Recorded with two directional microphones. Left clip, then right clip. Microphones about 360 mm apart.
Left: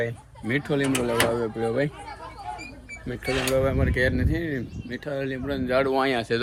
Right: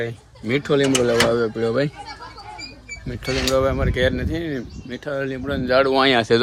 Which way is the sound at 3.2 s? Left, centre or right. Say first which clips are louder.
Right 4 dB; centre.